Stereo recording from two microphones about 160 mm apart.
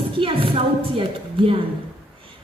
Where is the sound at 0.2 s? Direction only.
35° right (ahead or behind).